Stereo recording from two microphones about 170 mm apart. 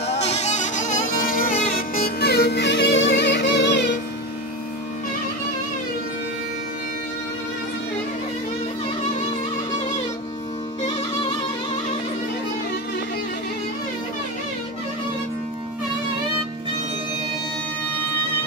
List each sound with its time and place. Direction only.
0.1 s music: 40° left (ahead or behind); by 3.9 s 90° left
10.9 s music: 25° left (ahead or behind)